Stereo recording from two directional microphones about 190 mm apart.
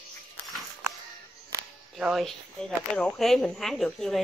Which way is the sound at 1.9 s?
Centre (ahead or behind).